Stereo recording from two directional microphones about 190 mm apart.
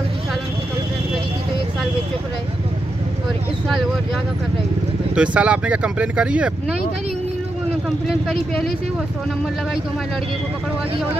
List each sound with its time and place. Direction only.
5.1 s speech: 5° right (ahead or behind)
8.1 s speech: centre (ahead or behind)